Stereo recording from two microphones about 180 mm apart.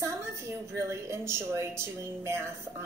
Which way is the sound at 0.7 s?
15° right (ahead or behind).